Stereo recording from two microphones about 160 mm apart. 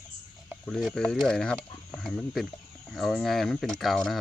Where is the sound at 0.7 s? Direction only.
Centre (ahead or behind).